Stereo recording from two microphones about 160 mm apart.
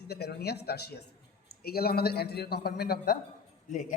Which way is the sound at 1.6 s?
70° left (ahead or behind).